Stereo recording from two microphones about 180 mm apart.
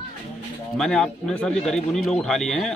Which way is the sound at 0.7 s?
5° left (ahead or behind).